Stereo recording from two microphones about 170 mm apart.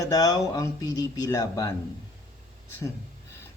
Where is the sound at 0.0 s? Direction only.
20° left (ahead or behind).